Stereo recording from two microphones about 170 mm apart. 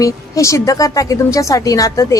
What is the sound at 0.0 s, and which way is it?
Speech, 20° left (ahead or behind).